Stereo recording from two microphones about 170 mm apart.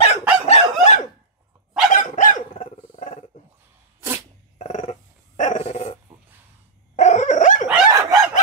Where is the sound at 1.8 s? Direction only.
50° left (ahead or behind).